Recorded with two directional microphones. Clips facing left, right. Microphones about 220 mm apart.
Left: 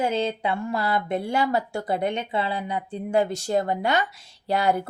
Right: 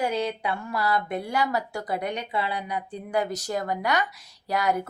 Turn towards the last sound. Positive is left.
turn(degrees=30)  # may be behind; listen again after turning